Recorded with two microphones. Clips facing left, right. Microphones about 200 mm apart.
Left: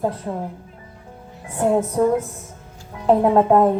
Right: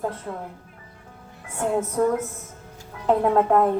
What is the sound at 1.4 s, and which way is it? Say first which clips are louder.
Speech: left 5 dB; 35° left (ahead or behind).